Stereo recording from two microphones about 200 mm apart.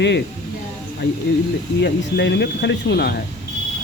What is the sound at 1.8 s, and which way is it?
Speech, 60° left (ahead or behind).